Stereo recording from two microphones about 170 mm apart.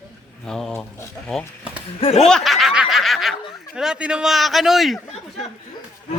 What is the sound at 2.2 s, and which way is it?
Speech, centre (ahead or behind).